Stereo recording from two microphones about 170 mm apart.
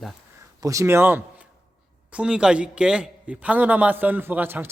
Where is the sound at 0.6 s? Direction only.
20° right (ahead or behind).